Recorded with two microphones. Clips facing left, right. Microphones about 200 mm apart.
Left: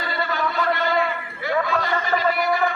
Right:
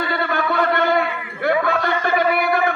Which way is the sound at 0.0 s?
55° right (ahead or behind).